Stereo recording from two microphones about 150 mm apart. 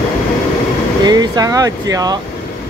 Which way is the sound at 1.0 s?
25° right (ahead or behind).